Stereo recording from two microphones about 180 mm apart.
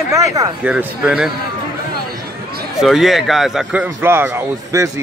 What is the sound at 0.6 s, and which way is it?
Speech, 5° right (ahead or behind).